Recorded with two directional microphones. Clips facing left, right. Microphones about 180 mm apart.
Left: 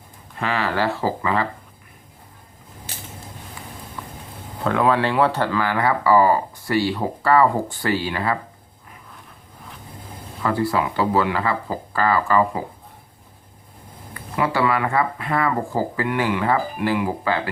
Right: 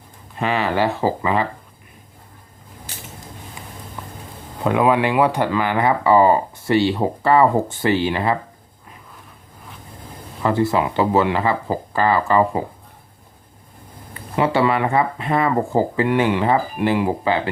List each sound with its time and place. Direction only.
0.3 s speech: 20° right (ahead or behind)
4.6 s speech: 15° right (ahead or behind)
10.4 s speech: 20° right (ahead or behind)
14.1 s speech: 25° right (ahead or behind)